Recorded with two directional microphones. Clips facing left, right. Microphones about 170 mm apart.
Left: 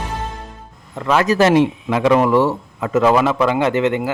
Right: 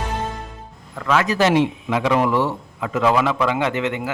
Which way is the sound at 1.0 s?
30° left (ahead or behind).